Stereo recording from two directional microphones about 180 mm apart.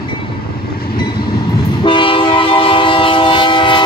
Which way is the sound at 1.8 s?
30° left (ahead or behind).